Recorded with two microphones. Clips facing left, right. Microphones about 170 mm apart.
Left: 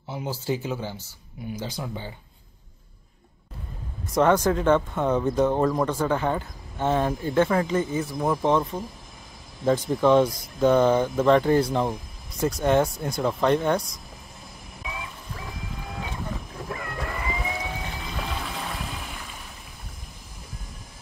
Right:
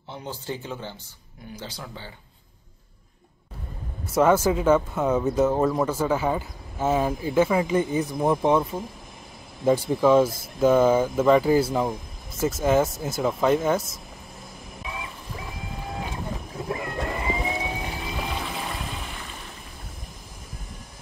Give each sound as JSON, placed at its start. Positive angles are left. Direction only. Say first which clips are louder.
{"t": 0.1, "sound": "speech", "louder": "left 5 dB", "side_deg": 10}
{"t": 4.1, "sound": "speech", "louder": "right 1 dB", "side_deg": -5}
{"t": 14.8, "sound": "a sound", "louder": "even", "side_deg": 0}
{"t": 16.6, "sound": "cat", "louder": "right 4 dB", "side_deg": -20}
{"t": 18.1, "sound": "music", "louder": "even", "side_deg": -5}